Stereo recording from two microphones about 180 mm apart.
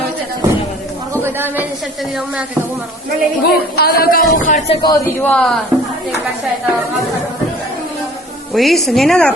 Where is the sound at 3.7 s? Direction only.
60° left (ahead or behind).